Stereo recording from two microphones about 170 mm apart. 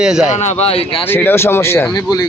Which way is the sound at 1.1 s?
10° left (ahead or behind).